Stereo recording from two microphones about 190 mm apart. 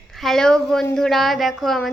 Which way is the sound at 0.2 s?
Centre (ahead or behind).